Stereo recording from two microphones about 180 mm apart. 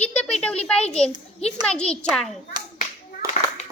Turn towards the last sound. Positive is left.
turn(degrees=-15)  # may be behind; listen again after turning